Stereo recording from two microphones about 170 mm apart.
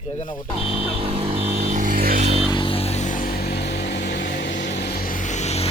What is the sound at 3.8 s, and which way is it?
Vehicle, 75° left (ahead or behind).